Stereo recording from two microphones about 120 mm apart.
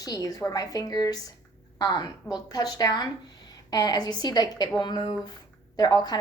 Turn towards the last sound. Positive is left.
turn(degrees=35)  # may be behind; listen again after turning